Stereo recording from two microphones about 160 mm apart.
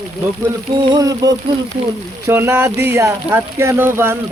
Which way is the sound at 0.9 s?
25° right (ahead or behind).